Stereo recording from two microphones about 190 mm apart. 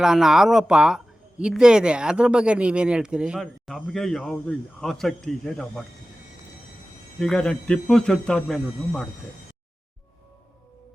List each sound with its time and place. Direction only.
0.0 s speech: 5° right (ahead or behind)
7.2 s speech: 5° left (ahead or behind)